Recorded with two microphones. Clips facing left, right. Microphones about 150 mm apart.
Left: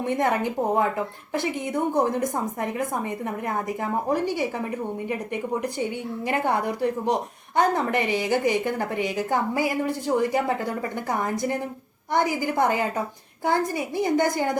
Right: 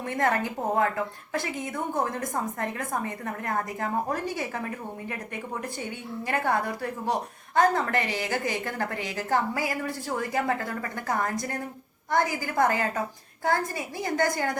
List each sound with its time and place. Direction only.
0.0 s a woman's voice: 20° left (ahead or behind)
5.0 s a woman's voice: 15° left (ahead or behind)